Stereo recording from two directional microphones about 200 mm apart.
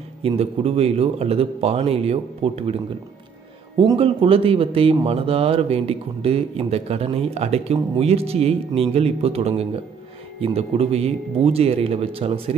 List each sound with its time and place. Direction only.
0.2 s speech: 30° right (ahead or behind)
3.8 s speech: 25° right (ahead or behind)